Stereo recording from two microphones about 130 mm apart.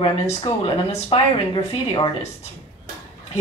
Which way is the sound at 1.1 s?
40° left (ahead or behind).